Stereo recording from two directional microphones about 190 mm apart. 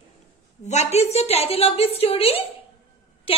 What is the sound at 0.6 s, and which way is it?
A woman's voice, 35° left (ahead or behind).